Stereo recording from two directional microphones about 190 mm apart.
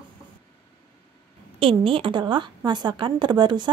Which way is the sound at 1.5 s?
30° right (ahead or behind).